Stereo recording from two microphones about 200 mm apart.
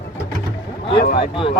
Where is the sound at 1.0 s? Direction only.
50° left (ahead or behind).